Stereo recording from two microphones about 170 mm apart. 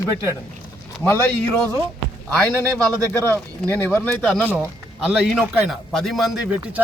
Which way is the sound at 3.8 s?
10° left (ahead or behind).